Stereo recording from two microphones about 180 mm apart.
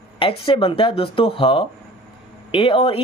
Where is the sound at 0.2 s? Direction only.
30° left (ahead or behind).